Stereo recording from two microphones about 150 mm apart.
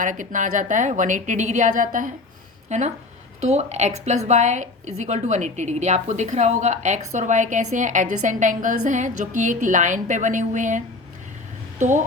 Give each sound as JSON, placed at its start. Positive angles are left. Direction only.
{"t": 0.0, "sound": "a woman's voice", "side_deg": -60}
{"t": 2.6, "sound": "a woman's voice", "side_deg": -50}